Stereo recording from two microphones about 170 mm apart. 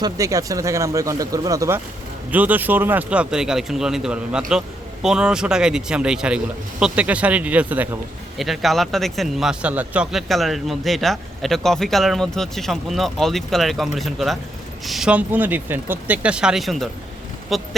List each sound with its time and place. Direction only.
0.0 s speech: 20° right (ahead or behind); by 17.7 s centre (ahead or behind)